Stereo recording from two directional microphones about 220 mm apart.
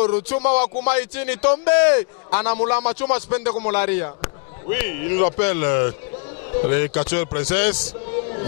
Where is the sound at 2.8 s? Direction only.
25° left (ahead or behind).